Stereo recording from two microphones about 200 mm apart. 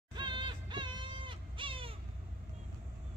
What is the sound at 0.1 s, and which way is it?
Music, 20° right (ahead or behind).